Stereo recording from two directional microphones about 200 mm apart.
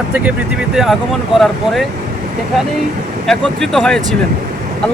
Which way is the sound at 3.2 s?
Centre (ahead or behind).